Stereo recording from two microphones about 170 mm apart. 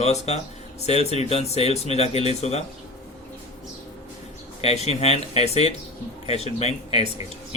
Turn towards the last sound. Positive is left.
turn(degrees=40)  # may be behind; listen again after turning